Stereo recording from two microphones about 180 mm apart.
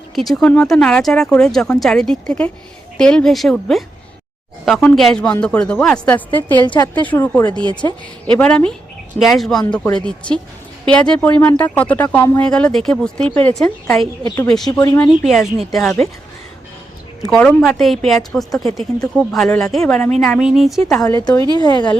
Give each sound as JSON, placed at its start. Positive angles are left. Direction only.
{"t": 0.2, "sound": "speech", "side_deg": 0}
{"t": 14.3, "sound": "speech", "side_deg": 20}
{"t": 15.2, "sound": "speech", "side_deg": 0}
{"t": 17.2, "sound": "speech", "side_deg": 5}
{"t": 21.5, "sound": "speech", "side_deg": 25}